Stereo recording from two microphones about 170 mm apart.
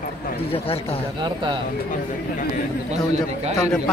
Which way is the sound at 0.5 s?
35° left (ahead or behind).